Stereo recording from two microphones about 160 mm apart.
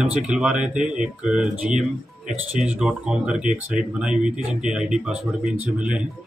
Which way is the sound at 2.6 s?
5° right (ahead or behind).